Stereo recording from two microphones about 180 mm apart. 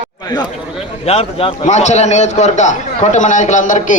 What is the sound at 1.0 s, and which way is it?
A man's voice, 35° left (ahead or behind).